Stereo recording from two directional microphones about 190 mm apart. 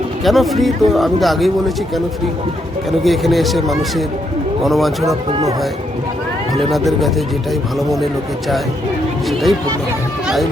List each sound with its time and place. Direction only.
0.3 s a man's voice: centre (ahead or behind)
3.0 s a man's voice: centre (ahead or behind)
5.3 s speech: 20° right (ahead or behind)
6.7 s a man's voice: centre (ahead or behind)